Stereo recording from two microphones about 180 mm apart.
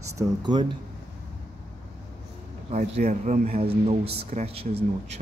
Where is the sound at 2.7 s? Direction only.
40° right (ahead or behind).